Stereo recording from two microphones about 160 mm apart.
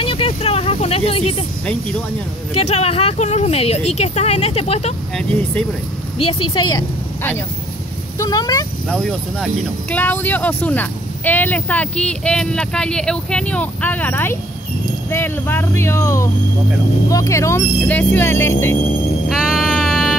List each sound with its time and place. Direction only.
0.0 s a sound: 35° left (ahead or behind)
1.7 s speech: 5° left (ahead or behind)
2.5 s speech: 40° left (ahead or behind)
5.1 s speech: 5° left (ahead or behind)
6.1 s speech: 25° left (ahead or behind)
8.2 s speech: 25° left (ahead or behind)
8.8 s speech: 5° left (ahead or behind)
19.2 s music: 5° right (ahead or behind)